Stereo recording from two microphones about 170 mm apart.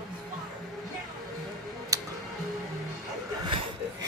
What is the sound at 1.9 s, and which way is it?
Music, 20° right (ahead or behind).